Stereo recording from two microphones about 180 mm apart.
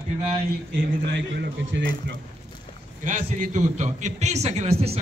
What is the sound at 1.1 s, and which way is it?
Speech, 70° right (ahead or behind).